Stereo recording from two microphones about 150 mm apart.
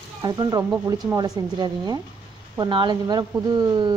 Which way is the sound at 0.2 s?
25° right (ahead or behind).